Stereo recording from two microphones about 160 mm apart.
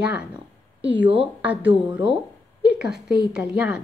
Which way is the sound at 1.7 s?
30° right (ahead or behind).